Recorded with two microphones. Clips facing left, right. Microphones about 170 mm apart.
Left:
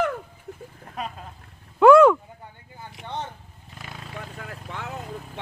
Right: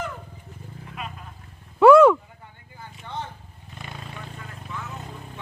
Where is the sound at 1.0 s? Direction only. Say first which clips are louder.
Left 4 dB; 40° left (ahead or behind).